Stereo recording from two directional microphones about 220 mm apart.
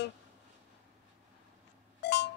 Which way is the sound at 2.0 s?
50° left (ahead or behind).